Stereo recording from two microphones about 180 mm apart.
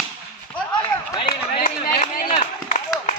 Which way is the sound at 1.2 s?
25° left (ahead or behind).